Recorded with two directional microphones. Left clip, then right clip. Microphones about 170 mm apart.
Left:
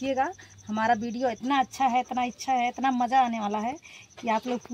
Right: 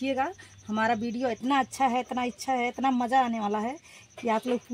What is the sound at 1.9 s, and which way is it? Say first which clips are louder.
Speech: left 3 dB; 20° left (ahead or behind).